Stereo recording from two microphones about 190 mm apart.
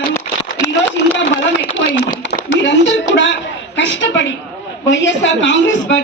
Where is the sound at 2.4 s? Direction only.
70° left (ahead or behind).